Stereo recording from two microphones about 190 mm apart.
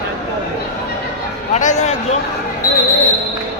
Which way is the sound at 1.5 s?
40° left (ahead or behind).